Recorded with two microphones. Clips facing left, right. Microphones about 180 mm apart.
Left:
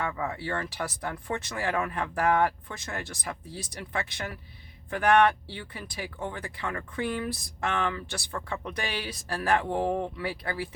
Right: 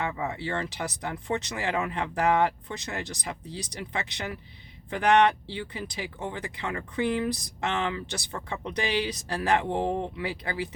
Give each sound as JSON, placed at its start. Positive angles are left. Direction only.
{"t": 0.0, "sound": "speech", "side_deg": -20}